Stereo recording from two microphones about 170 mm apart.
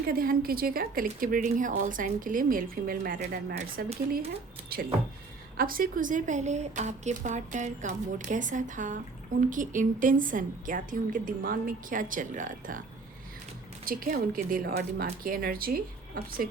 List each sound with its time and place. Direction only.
0.1 s a woman's voice: 55° right (ahead or behind)
4.7 s a woman's voice: 60° right (ahead or behind)
13.8 s a woman's voice: 55° right (ahead or behind)